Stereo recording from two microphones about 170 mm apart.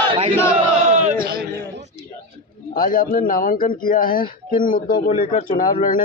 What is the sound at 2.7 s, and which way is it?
Speech, 60° left (ahead or behind).